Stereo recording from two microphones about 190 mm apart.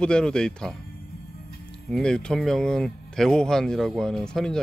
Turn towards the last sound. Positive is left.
turn(degrees=5)  # may be behind; listen again after turning